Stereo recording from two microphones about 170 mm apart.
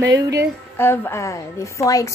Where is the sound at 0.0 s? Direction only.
20° right (ahead or behind).